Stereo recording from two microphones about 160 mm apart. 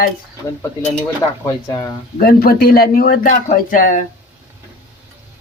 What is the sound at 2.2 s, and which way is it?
Speech, 70° left (ahead or behind).